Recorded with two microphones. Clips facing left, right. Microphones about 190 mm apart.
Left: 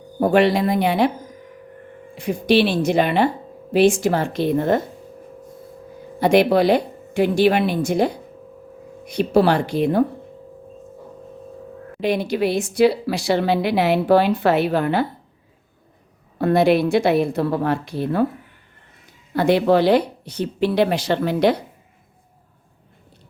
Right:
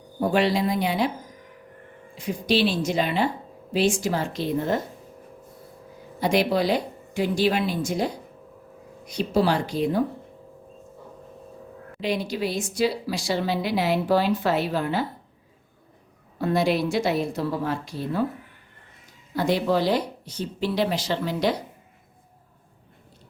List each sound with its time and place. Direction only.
0.2 s a woman's voice: 60° left (ahead or behind)
2.1 s a woman's voice: 60° left (ahead or behind)
6.1 s a woman's voice: 60° left (ahead or behind)
11.9 s a woman's voice: 55° left (ahead or behind)
16.4 s a woman's voice: 60° left (ahead or behind)
19.3 s a woman's voice: 65° left (ahead or behind)